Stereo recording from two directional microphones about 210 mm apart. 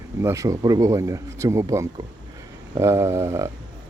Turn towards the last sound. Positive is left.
turn(degrees=-15)  # may be behind; listen again after turning